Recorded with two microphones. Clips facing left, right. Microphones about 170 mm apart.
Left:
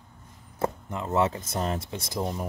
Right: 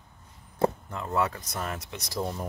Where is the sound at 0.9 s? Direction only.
20° left (ahead or behind).